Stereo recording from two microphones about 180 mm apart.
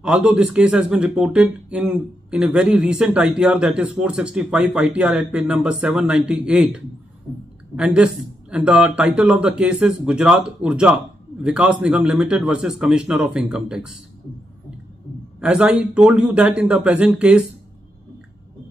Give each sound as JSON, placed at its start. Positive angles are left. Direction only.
{"t": 0.0, "sound": "speech", "side_deg": -5}
{"t": 15.4, "sound": "speech", "side_deg": -5}